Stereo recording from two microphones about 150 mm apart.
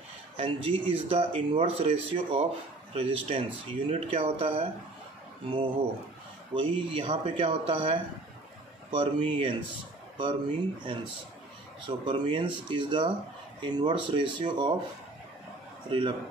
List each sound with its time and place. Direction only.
0.4 s speech: 40° right (ahead or behind)
6.5 s speech: 35° right (ahead or behind)
12.0 s speech: 30° right (ahead or behind)
15.9 s speech: 35° right (ahead or behind)